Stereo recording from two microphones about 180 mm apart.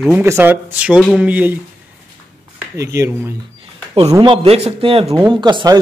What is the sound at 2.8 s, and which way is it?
Speech, 15° right (ahead or behind).